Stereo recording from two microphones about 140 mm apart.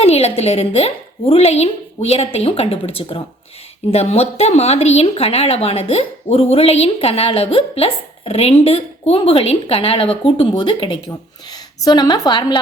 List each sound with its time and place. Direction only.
0.0 s a woman's voice: 45° left (ahead or behind); by 12.5 s 30° left (ahead or behind)